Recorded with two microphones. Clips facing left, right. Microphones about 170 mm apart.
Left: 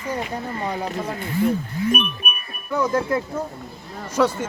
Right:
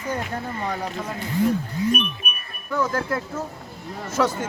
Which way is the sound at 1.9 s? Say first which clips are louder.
Left 3 dB; 55° left (ahead or behind).